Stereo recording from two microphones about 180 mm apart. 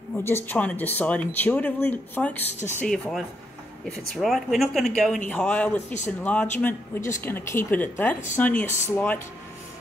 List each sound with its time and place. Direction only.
0.1 s a woman's voice: 15° left (ahead or behind)